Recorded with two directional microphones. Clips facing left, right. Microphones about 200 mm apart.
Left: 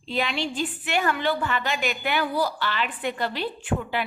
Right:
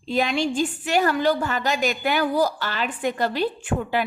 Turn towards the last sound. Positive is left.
turn(degrees=-45)  # may be behind; listen again after turning